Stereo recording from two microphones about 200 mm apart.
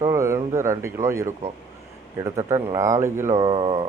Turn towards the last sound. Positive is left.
turn(degrees=-30)  # may be behind; listen again after turning